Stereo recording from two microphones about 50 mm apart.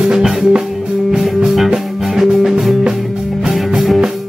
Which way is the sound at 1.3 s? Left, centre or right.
Centre.